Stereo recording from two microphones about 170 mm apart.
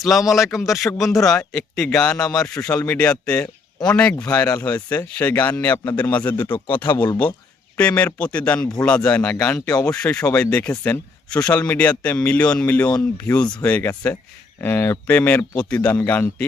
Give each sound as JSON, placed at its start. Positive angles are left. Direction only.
{"t": 0.3, "sound": "speech", "side_deg": 0}
{"t": 9.8, "sound": "speech", "side_deg": 5}